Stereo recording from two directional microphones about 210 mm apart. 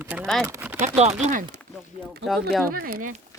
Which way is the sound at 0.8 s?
30° right (ahead or behind).